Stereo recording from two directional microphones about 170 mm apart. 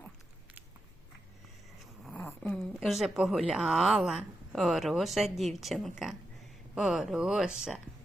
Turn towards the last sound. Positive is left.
turn(degrees=-5)  # may be behind; listen again after turning